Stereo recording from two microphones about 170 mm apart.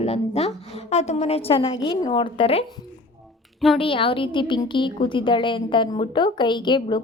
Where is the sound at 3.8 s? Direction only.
30° left (ahead or behind).